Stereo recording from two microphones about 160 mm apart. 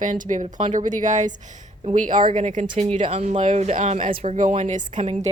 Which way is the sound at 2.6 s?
30° right (ahead or behind).